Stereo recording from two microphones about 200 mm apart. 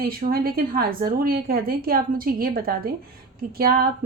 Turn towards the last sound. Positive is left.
turn(degrees=-50)  # may be behind; listen again after turning